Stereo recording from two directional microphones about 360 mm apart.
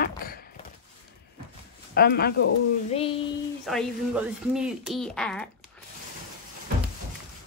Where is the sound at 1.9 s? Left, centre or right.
Left.